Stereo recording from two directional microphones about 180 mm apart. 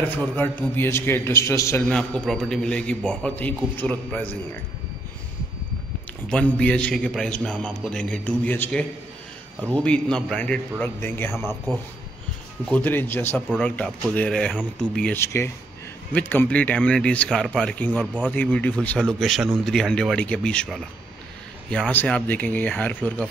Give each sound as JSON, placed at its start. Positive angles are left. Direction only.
{"t": 0.2, "sound": "a man's voice", "side_deg": 10}
{"t": 6.2, "sound": "a man's voice", "side_deg": 5}
{"t": 9.8, "sound": "a man's voice", "side_deg": 5}
{"t": 12.7, "sound": "a man's voice", "side_deg": 10}